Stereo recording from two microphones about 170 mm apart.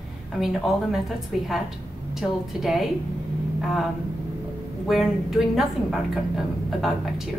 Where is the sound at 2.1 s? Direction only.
Centre (ahead or behind).